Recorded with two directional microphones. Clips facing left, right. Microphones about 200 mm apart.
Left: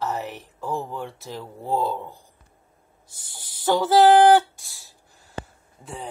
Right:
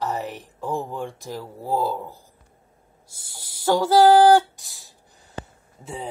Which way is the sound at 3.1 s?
10° right (ahead or behind).